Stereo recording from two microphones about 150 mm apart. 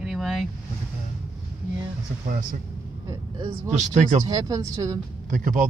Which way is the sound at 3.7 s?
50° right (ahead or behind).